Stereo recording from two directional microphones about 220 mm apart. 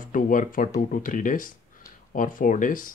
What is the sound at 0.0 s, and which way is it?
Speech, 35° left (ahead or behind).